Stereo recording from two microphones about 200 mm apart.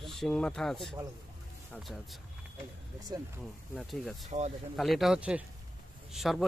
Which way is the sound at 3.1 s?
20° right (ahead or behind).